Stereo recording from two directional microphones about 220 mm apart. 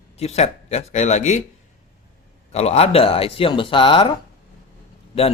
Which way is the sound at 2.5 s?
30° left (ahead or behind).